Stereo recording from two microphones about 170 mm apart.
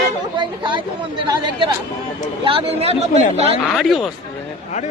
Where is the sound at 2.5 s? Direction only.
35° right (ahead or behind).